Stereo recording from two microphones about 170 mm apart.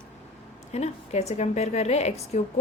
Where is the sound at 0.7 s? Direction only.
40° left (ahead or behind).